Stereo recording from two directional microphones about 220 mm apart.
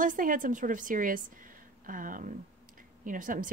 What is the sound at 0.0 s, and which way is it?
Speech, 40° right (ahead or behind).